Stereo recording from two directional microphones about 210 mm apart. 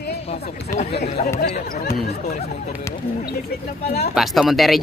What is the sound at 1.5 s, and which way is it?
Speech, 45° left (ahead or behind).